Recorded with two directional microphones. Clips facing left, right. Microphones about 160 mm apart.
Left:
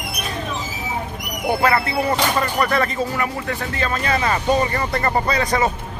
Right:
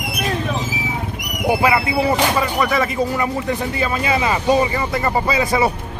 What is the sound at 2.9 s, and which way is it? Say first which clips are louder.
A man's voice: right 3 dB; 15° right (ahead or behind).